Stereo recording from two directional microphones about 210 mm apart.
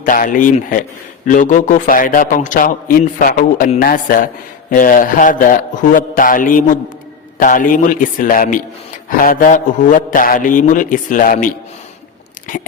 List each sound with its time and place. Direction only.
0.0 s a man's voice: 40° left (ahead or behind)